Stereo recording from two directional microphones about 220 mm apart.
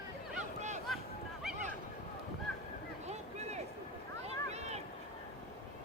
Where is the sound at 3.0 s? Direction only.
30° right (ahead or behind).